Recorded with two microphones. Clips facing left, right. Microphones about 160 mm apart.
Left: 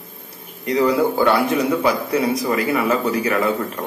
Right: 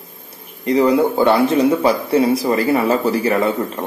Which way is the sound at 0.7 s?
25° right (ahead or behind).